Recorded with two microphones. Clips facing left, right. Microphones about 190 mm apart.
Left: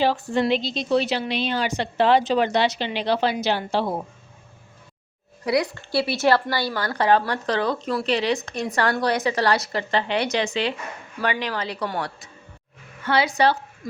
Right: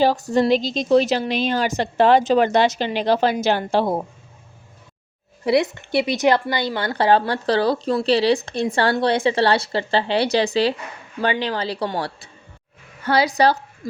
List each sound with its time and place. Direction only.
0.0 s a woman's voice: 40° right (ahead or behind)
5.5 s a woman's voice: 25° right (ahead or behind)